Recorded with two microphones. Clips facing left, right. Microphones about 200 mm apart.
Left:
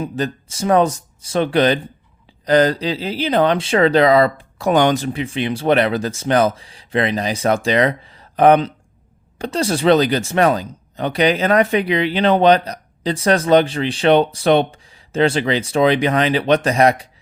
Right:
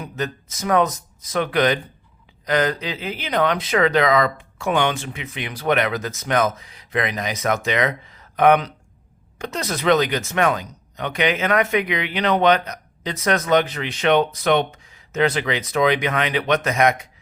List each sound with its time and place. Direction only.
0.0 s speech: 30° left (ahead or behind)